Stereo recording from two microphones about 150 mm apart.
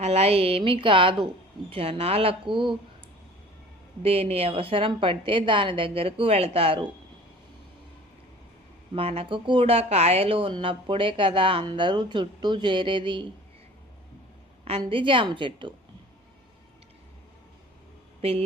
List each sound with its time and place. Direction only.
0.0 s a woman's voice: 45° right (ahead or behind)
4.0 s a woman's voice: 40° right (ahead or behind)
9.0 s a woman's voice: 40° right (ahead or behind)
14.8 s a woman's voice: 35° right (ahead or behind)
18.2 s a woman's voice: 40° right (ahead or behind)